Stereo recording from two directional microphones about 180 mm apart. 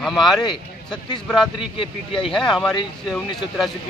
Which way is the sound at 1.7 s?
30° left (ahead or behind).